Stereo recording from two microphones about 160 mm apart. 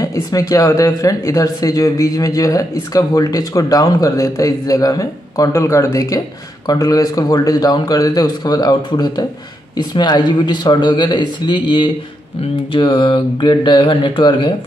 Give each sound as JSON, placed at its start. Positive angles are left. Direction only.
{"t": 0.0, "sound": "speech", "side_deg": 20}